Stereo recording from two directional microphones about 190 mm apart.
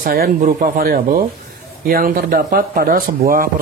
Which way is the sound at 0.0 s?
50° right (ahead or behind).